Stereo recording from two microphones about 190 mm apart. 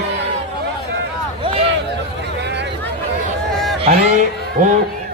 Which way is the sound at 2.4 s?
65° right (ahead or behind).